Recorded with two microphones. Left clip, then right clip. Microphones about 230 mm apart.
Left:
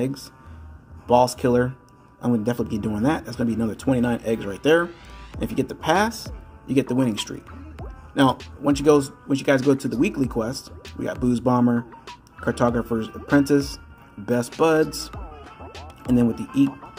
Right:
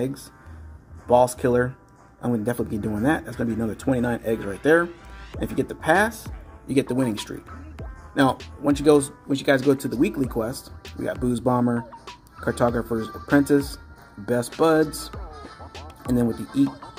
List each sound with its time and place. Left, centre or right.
1.0 s speech: centre
15.7 s music: centre